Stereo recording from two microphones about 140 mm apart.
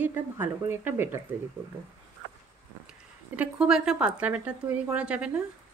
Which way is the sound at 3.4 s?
5° right (ahead or behind).